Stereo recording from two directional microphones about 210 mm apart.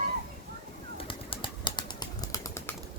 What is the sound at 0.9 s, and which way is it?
Bird, 25° left (ahead or behind).